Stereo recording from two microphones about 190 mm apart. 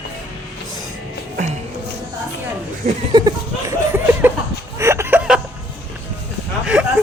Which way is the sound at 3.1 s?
20° right (ahead or behind).